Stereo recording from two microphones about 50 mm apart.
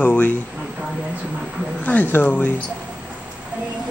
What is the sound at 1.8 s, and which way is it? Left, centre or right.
Speech, left.